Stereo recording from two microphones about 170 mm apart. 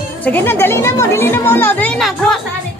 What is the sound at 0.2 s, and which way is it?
A woman's voice, 10° left (ahead or behind).